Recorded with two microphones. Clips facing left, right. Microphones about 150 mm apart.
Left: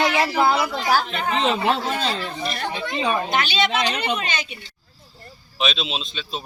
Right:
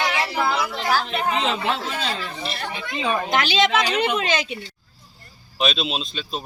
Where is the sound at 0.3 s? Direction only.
30° left (ahead or behind).